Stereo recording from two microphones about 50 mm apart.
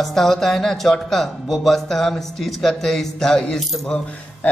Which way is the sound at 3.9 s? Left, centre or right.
Left.